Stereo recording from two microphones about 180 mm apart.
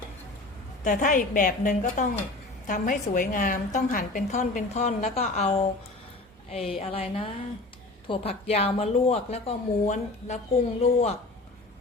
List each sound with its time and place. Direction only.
0.9 s a woman's voice: 45° left (ahead or behind)
8.0 s speech: 30° left (ahead or behind)